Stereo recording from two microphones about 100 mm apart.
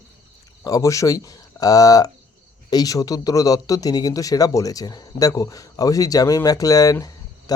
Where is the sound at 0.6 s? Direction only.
35° left (ahead or behind).